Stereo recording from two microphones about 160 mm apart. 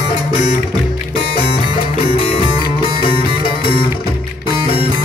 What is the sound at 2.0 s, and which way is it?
Music, 35° left (ahead or behind).